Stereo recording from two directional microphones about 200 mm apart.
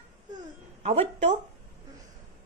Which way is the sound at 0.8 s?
30° right (ahead or behind).